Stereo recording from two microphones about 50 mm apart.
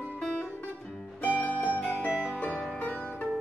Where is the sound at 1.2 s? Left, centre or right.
Left.